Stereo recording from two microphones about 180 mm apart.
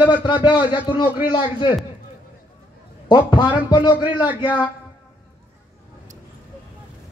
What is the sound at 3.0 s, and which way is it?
A man's voice, 25° left (ahead or behind).